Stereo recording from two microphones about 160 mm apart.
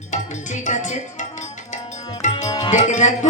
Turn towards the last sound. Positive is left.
turn(degrees=50)  # may be behind; listen again after turning